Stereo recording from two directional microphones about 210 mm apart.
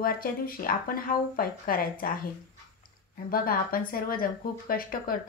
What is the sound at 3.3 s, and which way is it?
Speech, 45° left (ahead or behind).